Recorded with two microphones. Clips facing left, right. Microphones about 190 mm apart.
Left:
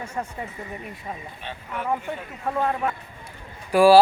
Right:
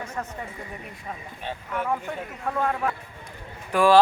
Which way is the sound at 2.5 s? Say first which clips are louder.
Left 2 dB; 15° left (ahead or behind).